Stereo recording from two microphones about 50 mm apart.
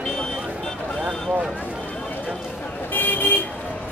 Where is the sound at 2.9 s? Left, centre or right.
Left.